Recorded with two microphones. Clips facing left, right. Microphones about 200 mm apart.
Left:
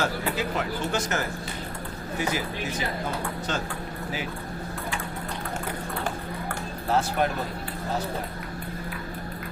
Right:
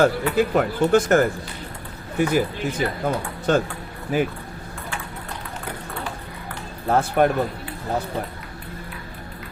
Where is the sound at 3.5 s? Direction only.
55° right (ahead or behind).